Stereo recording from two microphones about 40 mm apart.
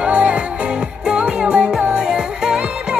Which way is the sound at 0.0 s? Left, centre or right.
Right.